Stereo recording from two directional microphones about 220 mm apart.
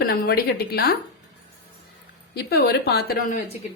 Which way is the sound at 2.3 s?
45° left (ahead or behind).